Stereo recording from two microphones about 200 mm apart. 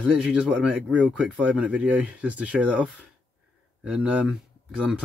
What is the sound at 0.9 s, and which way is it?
Speech, 5° right (ahead or behind).